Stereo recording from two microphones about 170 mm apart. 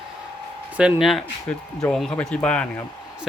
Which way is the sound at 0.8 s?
5° right (ahead or behind).